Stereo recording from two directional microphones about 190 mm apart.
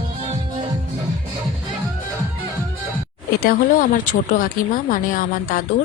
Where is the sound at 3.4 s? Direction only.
45° left (ahead or behind).